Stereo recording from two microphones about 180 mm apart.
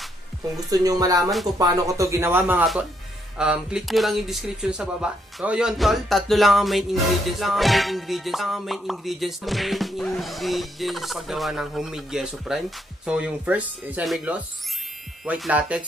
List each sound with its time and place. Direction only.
0.6 s speech: 20° right (ahead or behind); by 15.8 s 5° right (ahead or behind)